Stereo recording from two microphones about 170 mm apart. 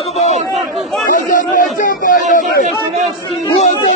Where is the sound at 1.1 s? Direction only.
55° left (ahead or behind).